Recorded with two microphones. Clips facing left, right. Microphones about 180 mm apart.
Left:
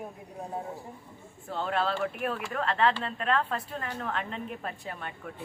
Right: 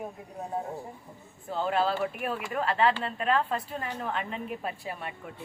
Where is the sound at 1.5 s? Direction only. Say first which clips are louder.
Right 2 dB; centre (ahead or behind).